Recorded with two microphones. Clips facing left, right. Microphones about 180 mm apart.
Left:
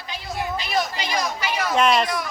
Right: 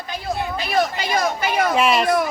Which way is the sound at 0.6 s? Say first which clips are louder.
Right 8 dB; 50° right (ahead or behind).